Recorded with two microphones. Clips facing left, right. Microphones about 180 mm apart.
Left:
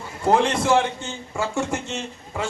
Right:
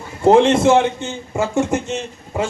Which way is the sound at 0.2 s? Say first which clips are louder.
Right 8 dB; 25° right (ahead or behind).